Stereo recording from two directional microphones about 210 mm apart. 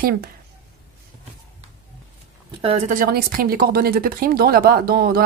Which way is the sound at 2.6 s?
30° right (ahead or behind).